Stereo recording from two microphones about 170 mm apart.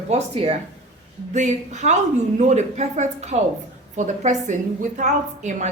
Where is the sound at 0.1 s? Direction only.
35° right (ahead or behind).